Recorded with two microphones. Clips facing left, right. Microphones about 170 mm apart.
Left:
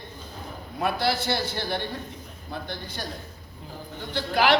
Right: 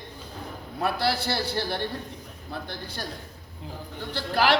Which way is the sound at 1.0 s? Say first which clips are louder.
Left 1 dB; 30° right (ahead or behind).